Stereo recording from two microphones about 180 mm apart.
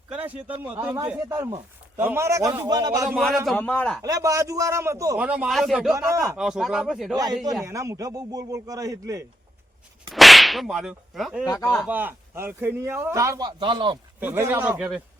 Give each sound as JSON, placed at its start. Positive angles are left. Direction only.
{"t": 0.1, "sound": "a man's voice", "side_deg": -10}
{"t": 3.4, "sound": "speech", "side_deg": 5}
{"t": 4.0, "sound": "a man's voice", "side_deg": -20}
{"t": 5.1, "sound": "speech", "side_deg": -5}
{"t": 5.9, "sound": "a man's voice", "side_deg": -20}
{"t": 6.3, "sound": "speech", "side_deg": -5}
{"t": 7.6, "sound": "a man's voice", "side_deg": -15}
{"t": 10.1, "sound": "whip", "side_deg": 0}
{"t": 11.4, "sound": "speech", "side_deg": 15}
{"t": 11.7, "sound": "speech", "side_deg": 0}
{"t": 11.9, "sound": "a man's voice", "side_deg": -10}
{"t": 14.2, "sound": "a man's voice", "side_deg": -10}